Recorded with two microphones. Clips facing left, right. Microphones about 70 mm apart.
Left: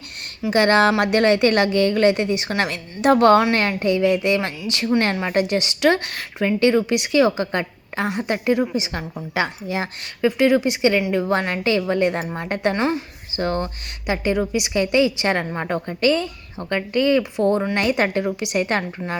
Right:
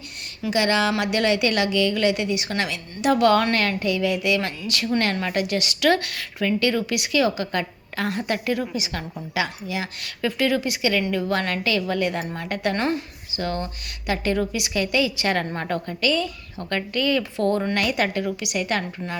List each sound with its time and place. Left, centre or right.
0.5 s speech: left
10.2 s speech: left
13.3 s speech: left
14.1 s speech: centre